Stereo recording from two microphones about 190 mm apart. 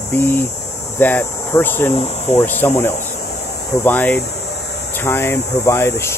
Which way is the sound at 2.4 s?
10° left (ahead or behind).